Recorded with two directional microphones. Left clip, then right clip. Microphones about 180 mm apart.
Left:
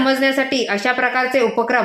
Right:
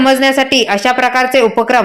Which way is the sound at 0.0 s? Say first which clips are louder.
Right 6 dB; 30° right (ahead or behind).